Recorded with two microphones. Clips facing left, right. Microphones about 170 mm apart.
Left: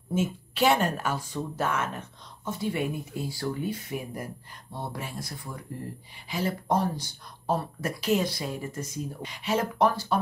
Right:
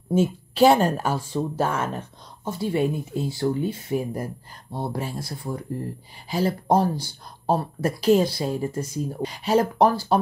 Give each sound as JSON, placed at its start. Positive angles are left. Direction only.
{"t": 0.1, "sound": "speech", "side_deg": -35}